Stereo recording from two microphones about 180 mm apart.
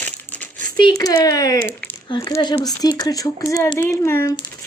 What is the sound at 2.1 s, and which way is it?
Speech, 20° left (ahead or behind).